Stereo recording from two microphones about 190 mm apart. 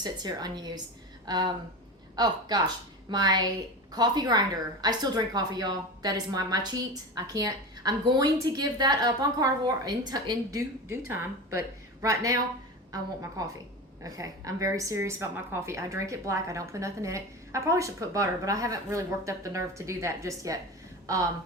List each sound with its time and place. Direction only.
0.0 s a woman's voice: 20° right (ahead or behind)